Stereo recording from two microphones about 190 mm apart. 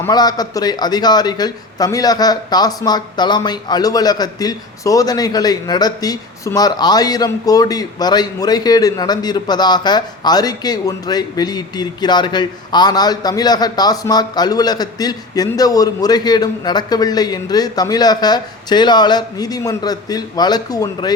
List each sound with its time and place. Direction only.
0.0 s a man's voice: 20° left (ahead or behind)